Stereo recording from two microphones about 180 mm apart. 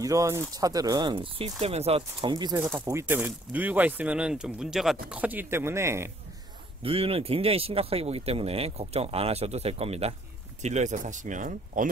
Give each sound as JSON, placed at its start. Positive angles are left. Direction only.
{"t": 0.0, "sound": "speech", "side_deg": -20}
{"t": 6.8, "sound": "speech", "side_deg": -30}